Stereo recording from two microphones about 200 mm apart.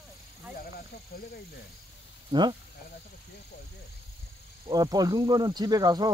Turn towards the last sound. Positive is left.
turn(degrees=-20)  # may be behind; listen again after turning